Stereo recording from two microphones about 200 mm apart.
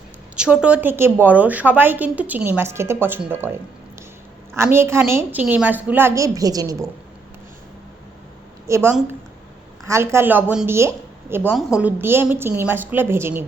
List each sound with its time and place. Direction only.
0.3 s a woman's voice: 5° right (ahead or behind)
4.5 s a woman's voice: 10° right (ahead or behind)
8.6 s a woman's voice: 15° right (ahead or behind)